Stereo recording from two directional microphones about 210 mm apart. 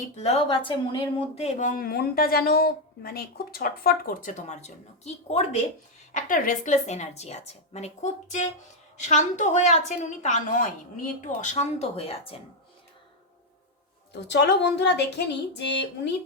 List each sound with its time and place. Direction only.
0.2 s speech: 30° left (ahead or behind)
14.1 s speech: 55° left (ahead or behind)